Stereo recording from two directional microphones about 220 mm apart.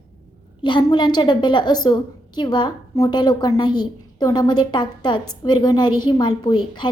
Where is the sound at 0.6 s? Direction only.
20° left (ahead or behind).